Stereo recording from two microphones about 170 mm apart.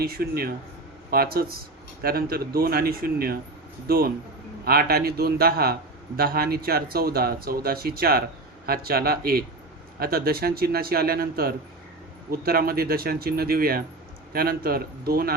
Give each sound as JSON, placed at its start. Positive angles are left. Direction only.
{"t": 0.0, "sound": "speech", "side_deg": -60}